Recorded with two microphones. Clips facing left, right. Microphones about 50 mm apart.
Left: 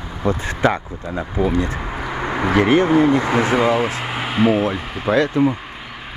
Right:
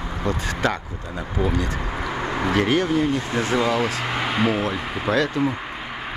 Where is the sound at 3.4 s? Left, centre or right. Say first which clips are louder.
Left 4 dB; left; by 5.5 s centre.